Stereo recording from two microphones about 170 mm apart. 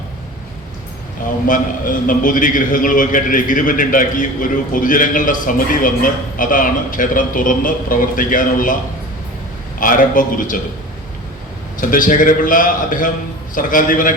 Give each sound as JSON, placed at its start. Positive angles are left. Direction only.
{"t": 1.5, "sound": "a man's voice", "side_deg": 50}
{"t": 9.8, "sound": "a man's voice", "side_deg": 50}
{"t": 11.8, "sound": "a man's voice", "side_deg": 55}